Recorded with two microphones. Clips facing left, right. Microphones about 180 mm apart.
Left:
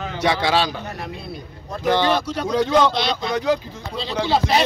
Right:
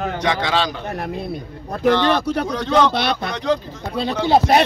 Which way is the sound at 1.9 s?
10° left (ahead or behind).